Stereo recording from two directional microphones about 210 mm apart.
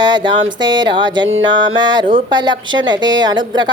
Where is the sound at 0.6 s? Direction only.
20° right (ahead or behind).